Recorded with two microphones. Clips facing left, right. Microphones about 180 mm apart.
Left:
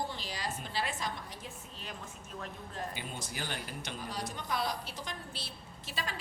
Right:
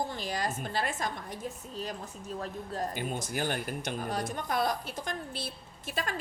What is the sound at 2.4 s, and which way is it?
Speech, 45° right (ahead or behind).